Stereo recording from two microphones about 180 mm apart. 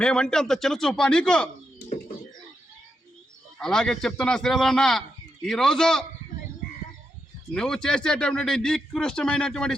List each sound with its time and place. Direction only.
0.0 s a man's voice: 5° left (ahead or behind)
3.6 s a man's voice: 5° left (ahead or behind)
7.5 s a man's voice: 5° left (ahead or behind)